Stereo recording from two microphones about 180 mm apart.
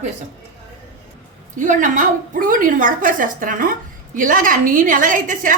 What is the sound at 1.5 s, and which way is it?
Speech, 45° right (ahead or behind).